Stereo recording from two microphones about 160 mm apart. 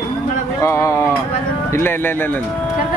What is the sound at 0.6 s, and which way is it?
Speech, 20° left (ahead or behind).